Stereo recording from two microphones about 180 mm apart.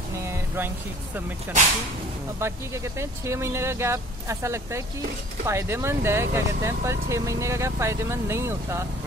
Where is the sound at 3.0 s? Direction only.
15° right (ahead or behind).